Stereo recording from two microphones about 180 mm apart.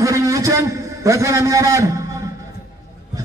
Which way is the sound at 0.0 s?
20° right (ahead or behind).